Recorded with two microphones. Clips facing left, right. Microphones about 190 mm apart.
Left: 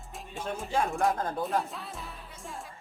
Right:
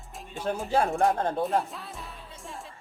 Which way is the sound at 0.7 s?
35° right (ahead or behind).